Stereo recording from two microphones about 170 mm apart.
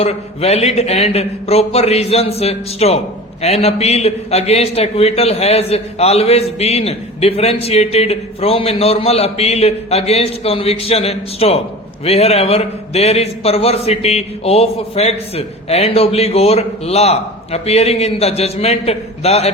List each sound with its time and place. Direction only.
0.0 s a man's voice: 35° left (ahead or behind)